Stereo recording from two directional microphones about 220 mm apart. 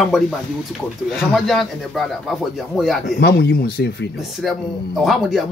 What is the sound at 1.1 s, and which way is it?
Speech, centre (ahead or behind).